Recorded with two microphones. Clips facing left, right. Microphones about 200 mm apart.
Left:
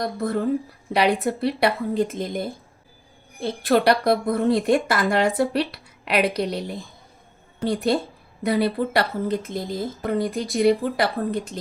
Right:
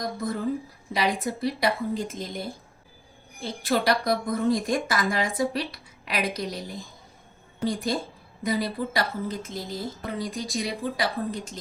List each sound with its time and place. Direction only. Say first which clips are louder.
0.0 s a woman's voice: left 5 dB; 65° left (ahead or behind)